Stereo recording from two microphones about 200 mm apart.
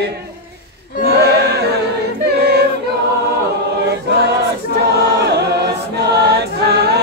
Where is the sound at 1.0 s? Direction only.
55° right (ahead or behind).